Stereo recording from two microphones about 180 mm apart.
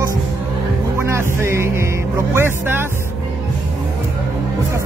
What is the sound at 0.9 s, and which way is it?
Music, 15° right (ahead or behind).